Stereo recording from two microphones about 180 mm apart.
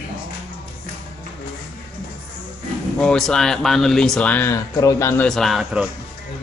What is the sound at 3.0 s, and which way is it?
Speech, centre (ahead or behind).